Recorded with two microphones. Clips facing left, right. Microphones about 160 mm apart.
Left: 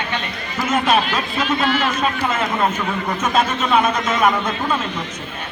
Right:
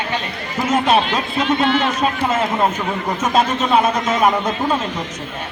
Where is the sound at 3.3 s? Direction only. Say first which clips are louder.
Right 2 dB; 35° right (ahead or behind).